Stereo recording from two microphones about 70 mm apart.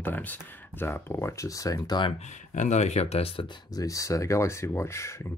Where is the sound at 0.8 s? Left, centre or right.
Left.